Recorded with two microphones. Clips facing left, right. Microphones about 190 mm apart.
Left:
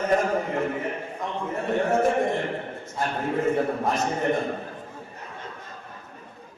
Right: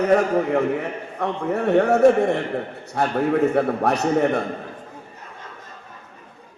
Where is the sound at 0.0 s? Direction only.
70° right (ahead or behind).